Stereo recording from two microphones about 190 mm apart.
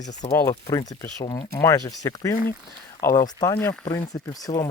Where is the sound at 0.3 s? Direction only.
15° left (ahead or behind).